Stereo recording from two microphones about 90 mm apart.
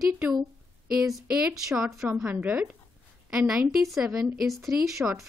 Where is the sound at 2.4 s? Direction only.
15° right (ahead or behind).